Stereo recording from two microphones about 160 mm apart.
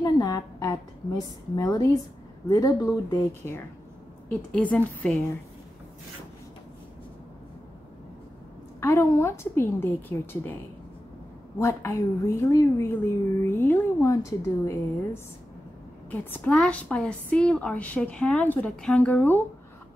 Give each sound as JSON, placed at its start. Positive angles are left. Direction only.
{"t": 0.0, "sound": "a sound", "side_deg": 20}
{"t": 1.5, "sound": "speech", "side_deg": 20}
{"t": 4.3, "sound": "a woman's voice", "side_deg": 10}
{"t": 8.8, "sound": "a woman's voice", "side_deg": 20}
{"t": 11.6, "sound": "a woman's voice", "side_deg": 15}